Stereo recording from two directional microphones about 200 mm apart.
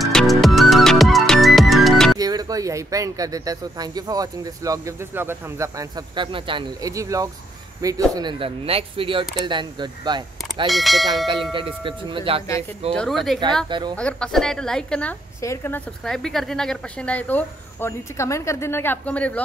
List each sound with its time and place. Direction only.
0.0 s music: centre (ahead or behind)
2.1 s speech: 20° right (ahead or behind)
10.7 s speech: centre (ahead or behind)
11.5 s speech: 25° right (ahead or behind)
12.9 s speech: centre (ahead or behind)
13.7 s speech: 25° right (ahead or behind)
13.9 s a woman's voice: 5° left (ahead or behind)